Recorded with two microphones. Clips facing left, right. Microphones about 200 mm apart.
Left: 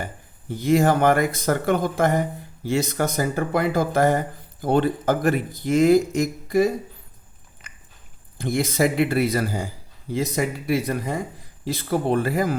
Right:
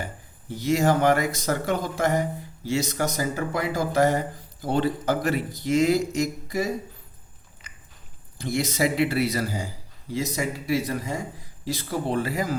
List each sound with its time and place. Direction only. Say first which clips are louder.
0.5 s a man's voice: left 3 dB; 55° left (ahead or behind)
7.6 s biting: left 1 dB; 55° left (ahead or behind)
8.4 s a man's voice: left 3 dB; 55° left (ahead or behind)